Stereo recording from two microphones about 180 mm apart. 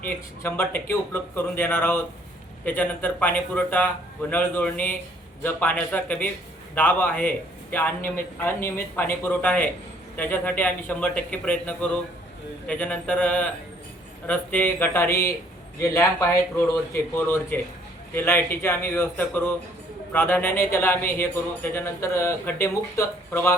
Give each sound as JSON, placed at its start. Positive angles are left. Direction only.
{"t": 0.4, "sound": "speech", "side_deg": 10}